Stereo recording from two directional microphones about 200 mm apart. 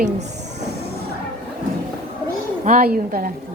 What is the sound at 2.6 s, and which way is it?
Speech, 45° right (ahead or behind).